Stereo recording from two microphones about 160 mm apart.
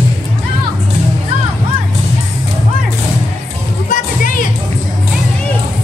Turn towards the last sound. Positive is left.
turn(degrees=55)  # may be behind; listen again after turning